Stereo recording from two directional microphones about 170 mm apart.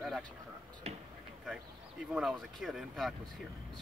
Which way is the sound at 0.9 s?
40° right (ahead or behind).